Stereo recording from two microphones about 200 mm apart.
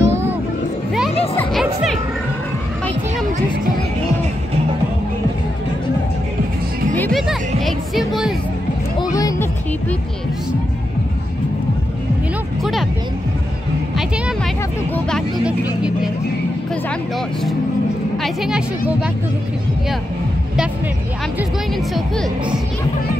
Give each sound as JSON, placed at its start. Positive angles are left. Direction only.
{"t": 0.0, "sound": "music", "side_deg": -10}
{"t": 1.3, "sound": "music", "side_deg": 10}
{"t": 7.0, "sound": "music", "side_deg": 0}
{"t": 9.0, "sound": "music", "side_deg": 15}
{"t": 13.9, "sound": "music", "side_deg": -5}
{"t": 15.0, "sound": "vehicle", "side_deg": 5}
{"t": 18.1, "sound": "a sound", "side_deg": 0}